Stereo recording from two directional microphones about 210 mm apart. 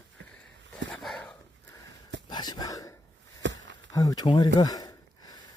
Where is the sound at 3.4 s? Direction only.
60° right (ahead or behind).